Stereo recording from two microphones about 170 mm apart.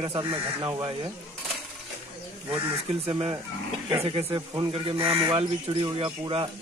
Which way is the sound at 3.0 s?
35° right (ahead or behind).